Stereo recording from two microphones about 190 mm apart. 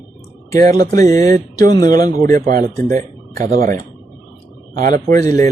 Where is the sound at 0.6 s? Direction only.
40° right (ahead or behind).